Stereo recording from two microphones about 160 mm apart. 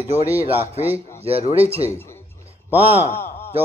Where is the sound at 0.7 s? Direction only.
40° right (ahead or behind).